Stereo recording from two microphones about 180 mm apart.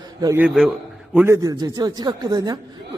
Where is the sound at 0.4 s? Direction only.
5° right (ahead or behind).